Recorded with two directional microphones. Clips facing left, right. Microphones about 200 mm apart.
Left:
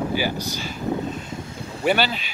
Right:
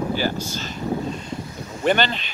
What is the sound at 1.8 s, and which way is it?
Speech, 5° left (ahead or behind).